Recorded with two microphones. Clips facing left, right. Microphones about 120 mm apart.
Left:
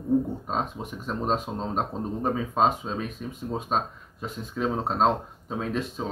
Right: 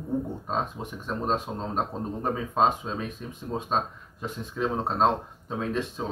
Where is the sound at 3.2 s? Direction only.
15° left (ahead or behind).